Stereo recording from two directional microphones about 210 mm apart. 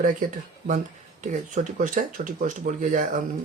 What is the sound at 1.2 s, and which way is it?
Speech, 40° right (ahead or behind).